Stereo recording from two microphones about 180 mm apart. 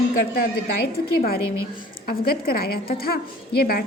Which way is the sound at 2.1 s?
55° left (ahead or behind).